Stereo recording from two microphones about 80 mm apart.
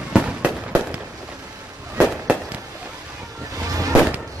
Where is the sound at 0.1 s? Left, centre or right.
Centre.